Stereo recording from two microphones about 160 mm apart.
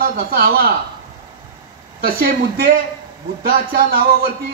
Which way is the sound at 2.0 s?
70° right (ahead or behind).